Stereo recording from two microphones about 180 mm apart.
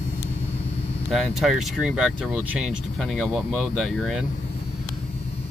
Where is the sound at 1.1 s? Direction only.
Centre (ahead or behind).